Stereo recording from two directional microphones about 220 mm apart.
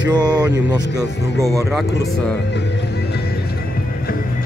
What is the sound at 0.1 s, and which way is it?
Speech, 20° right (ahead or behind).